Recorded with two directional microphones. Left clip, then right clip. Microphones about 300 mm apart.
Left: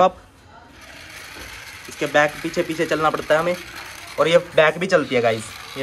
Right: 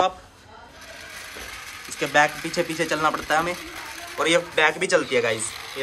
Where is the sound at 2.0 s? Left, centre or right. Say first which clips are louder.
Left 2 dB; centre.